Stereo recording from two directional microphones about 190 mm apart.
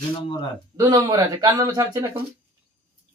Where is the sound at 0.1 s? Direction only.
25° left (ahead or behind).